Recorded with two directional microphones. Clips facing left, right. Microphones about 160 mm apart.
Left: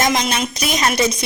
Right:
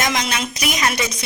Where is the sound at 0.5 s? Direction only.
30° left (ahead or behind).